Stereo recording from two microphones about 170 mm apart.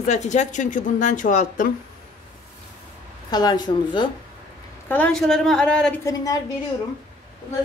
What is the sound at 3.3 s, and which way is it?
Speech, 25° left (ahead or behind).